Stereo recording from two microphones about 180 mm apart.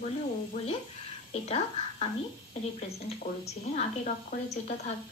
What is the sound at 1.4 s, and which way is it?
Speech, 35° left (ahead or behind).